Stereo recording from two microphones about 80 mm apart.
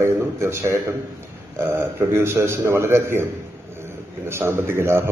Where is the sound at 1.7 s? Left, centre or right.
Right.